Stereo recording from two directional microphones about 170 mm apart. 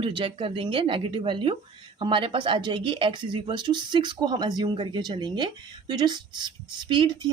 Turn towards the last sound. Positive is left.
turn(degrees=-30)  # may be behind; listen again after turning